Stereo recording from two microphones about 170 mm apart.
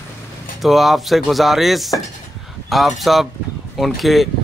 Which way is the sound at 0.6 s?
Centre (ahead or behind).